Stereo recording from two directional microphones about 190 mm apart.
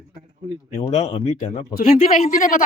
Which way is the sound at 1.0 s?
35° left (ahead or behind).